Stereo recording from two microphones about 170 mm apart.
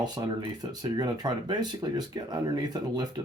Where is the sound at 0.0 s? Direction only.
25° right (ahead or behind).